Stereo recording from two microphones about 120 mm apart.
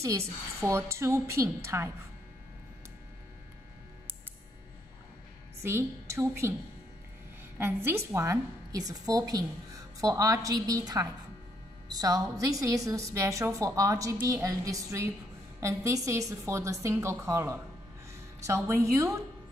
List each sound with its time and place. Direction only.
0.0 s a woman's voice: 25° right (ahead or behind)
5.6 s a woman's voice: 20° right (ahead or behind)
7.5 s a woman's voice: 20° right (ahead or behind)